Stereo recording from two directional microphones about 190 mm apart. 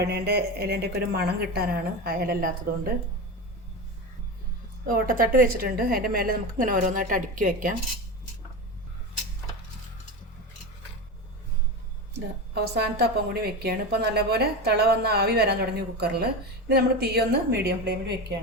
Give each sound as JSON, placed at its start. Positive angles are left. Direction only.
{"t": 0.0, "sound": "a woman's voice", "side_deg": -60}
{"t": 4.9, "sound": "a woman's voice", "side_deg": -50}
{"t": 12.1, "sound": "a woman's voice", "side_deg": -60}